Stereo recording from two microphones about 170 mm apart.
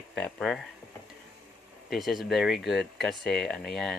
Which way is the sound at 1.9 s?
Centre (ahead or behind).